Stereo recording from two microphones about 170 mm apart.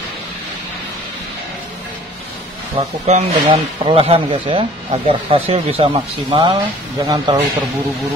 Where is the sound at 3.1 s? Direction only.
40° right (ahead or behind).